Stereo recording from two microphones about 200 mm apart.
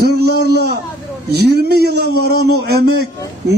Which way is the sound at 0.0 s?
55° right (ahead or behind).